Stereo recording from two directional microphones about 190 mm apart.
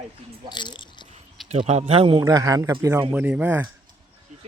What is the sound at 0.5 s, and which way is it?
Speech, 25° left (ahead or behind).